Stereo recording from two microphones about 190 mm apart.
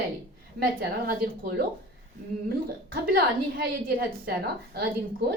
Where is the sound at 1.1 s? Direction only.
55° right (ahead or behind).